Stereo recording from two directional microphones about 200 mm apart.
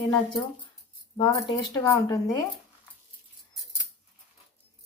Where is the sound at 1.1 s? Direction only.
20° left (ahead or behind).